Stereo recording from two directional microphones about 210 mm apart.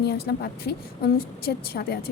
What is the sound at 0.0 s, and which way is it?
A woman's voice, 50° left (ahead or behind).